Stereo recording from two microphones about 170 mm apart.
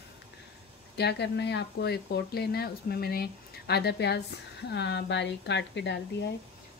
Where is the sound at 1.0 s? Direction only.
85° left.